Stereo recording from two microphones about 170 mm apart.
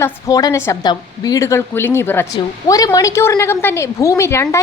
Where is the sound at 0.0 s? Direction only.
20° left (ahead or behind).